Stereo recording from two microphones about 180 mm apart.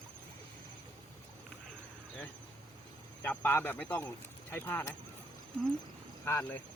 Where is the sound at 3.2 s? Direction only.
10° left (ahead or behind).